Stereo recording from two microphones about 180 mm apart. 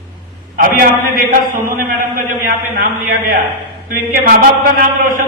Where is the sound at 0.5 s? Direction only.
55° right (ahead or behind).